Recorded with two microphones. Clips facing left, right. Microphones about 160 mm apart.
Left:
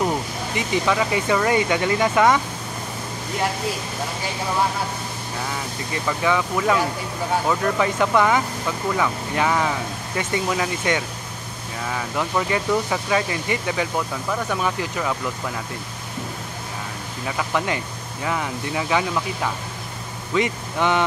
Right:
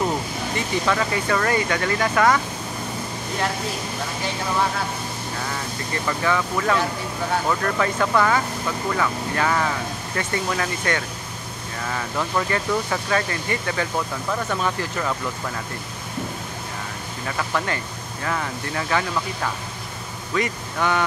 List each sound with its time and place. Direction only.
0.6 s speech: 15° left (ahead or behind)
6.0 s speech: 10° left (ahead or behind)
17.4 s speech: 10° left (ahead or behind)